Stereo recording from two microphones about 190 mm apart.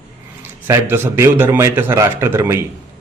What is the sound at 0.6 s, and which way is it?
A man's voice, 10° right (ahead or behind).